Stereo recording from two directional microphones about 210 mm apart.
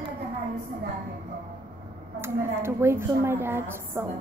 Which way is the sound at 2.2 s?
10° right (ahead or behind).